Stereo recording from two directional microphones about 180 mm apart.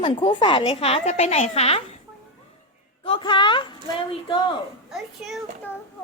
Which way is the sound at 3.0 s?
30° left (ahead or behind).